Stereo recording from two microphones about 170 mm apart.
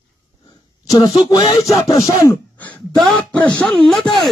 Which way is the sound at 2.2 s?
10° left (ahead or behind).